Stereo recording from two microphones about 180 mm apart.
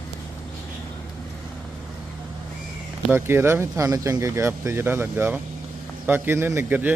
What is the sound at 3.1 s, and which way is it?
Speech, 15° right (ahead or behind).